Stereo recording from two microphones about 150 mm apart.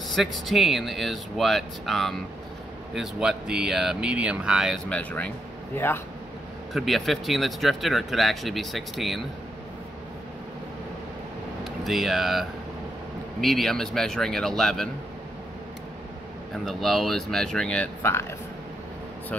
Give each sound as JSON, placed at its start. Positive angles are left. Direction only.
{"t": 0.1, "sound": "speech", "side_deg": 0}
{"t": 4.8, "sound": "speech", "side_deg": 10}
{"t": 6.7, "sound": "speech", "side_deg": 0}
{"t": 11.6, "sound": "speech", "side_deg": 0}
{"t": 16.6, "sound": "speech", "side_deg": 0}
{"t": 18.0, "sound": "speech", "side_deg": 15}